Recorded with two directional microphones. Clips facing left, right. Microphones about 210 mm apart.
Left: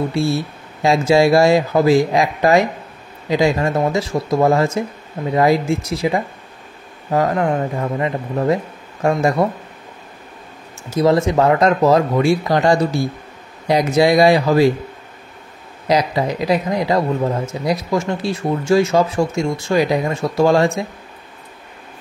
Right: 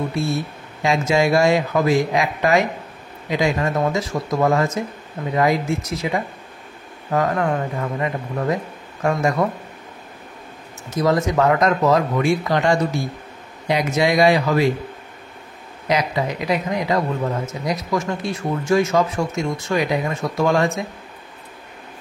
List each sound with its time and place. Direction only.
0.8 s speech: 35° left (ahead or behind)
10.9 s speech: 30° left (ahead or behind)
15.9 s speech: 35° left (ahead or behind)